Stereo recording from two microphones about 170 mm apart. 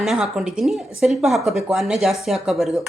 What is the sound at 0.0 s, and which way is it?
A woman's voice, centre (ahead or behind).